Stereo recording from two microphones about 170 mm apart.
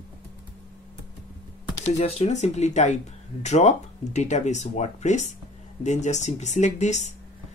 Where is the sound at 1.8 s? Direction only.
40° left (ahead or behind).